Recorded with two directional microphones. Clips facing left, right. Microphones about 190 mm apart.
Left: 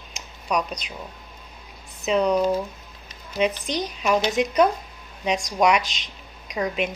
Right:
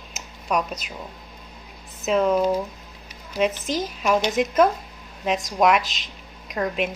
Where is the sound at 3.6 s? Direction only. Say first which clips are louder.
Right 1 dB; centre (ahead or behind).